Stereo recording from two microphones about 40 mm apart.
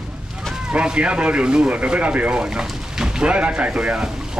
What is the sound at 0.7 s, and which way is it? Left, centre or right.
Speech, right.